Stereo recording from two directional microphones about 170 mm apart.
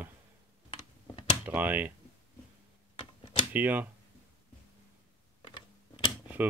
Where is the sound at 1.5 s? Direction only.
10° right (ahead or behind).